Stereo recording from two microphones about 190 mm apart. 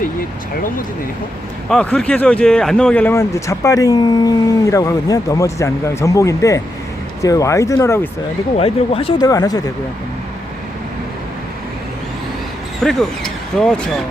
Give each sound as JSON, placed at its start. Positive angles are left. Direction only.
{"t": 1.7, "sound": "speech", "side_deg": 5}
{"t": 8.5, "sound": "speech", "side_deg": 30}
{"t": 9.3, "sound": "speech", "side_deg": 20}
{"t": 12.8, "sound": "speech", "side_deg": 0}